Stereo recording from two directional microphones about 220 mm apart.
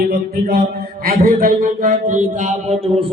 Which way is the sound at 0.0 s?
45° right (ahead or behind).